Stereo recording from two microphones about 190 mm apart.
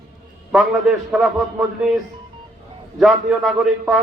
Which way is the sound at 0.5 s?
Centre (ahead or behind).